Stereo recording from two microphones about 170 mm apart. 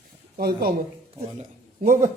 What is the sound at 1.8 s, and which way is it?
Speech, 50° right (ahead or behind).